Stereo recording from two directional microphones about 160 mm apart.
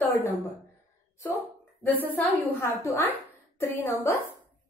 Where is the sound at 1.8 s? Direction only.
10° left (ahead or behind).